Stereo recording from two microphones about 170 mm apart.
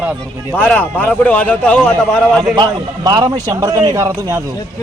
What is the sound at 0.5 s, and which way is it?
A man's voice, 10° left (ahead or behind).